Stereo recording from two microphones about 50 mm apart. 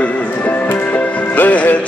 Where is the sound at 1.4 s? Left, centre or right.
Left.